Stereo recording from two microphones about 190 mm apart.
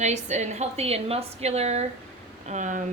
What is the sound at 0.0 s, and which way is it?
A woman's voice, 40° right (ahead or behind).